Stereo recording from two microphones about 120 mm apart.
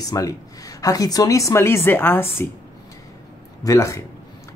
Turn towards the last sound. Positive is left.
turn(degrees=25)  # may be behind; listen again after turning